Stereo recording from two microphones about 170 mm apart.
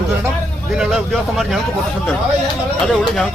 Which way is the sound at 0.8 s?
Centre (ahead or behind).